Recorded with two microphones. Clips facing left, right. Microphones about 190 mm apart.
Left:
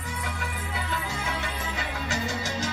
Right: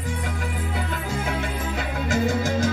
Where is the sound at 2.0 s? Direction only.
55° right (ahead or behind).